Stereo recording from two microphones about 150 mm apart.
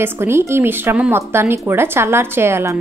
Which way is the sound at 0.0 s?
15° right (ahead or behind).